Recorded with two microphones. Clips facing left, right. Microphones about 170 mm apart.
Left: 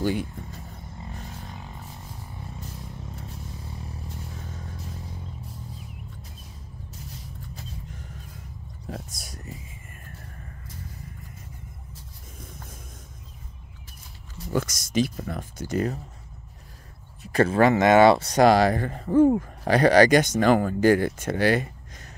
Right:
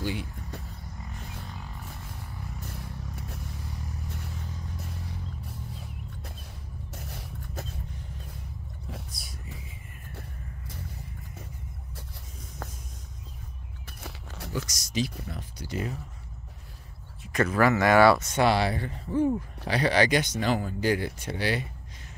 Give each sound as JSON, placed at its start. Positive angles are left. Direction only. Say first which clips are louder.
{"t": 0.0, "sound": "speech", "louder": "left 7 dB", "side_deg": 45}
{"t": 6.9, "sound": "vehicle", "louder": "right 2 dB", "side_deg": -65}
{"t": 9.1, "sound": "a sound", "louder": "left 2 dB", "side_deg": 40}
{"t": 14.0, "sound": "a sound", "louder": "right 2 dB", "side_deg": -75}
{"t": 14.5, "sound": "speech", "louder": "left 7 dB", "side_deg": 55}
{"t": 17.2, "sound": "speech", "louder": "left 4 dB", "side_deg": 30}
{"t": 18.2, "sound": "speech", "louder": "left 6 dB", "side_deg": 40}